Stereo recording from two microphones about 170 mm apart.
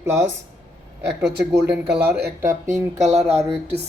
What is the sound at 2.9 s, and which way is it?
Speech, 40° right (ahead or behind).